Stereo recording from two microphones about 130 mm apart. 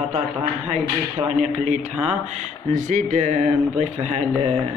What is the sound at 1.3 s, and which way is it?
Speech, 60° right (ahead or behind).